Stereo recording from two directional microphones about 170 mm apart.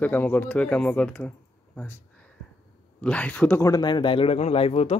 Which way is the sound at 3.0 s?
10° left (ahead or behind).